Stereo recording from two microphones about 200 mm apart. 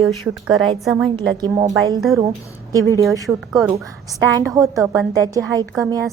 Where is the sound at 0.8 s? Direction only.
Centre (ahead or behind).